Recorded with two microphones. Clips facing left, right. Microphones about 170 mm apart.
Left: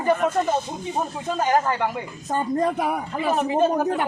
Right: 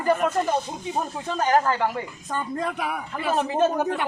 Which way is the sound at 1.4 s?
20° left (ahead or behind).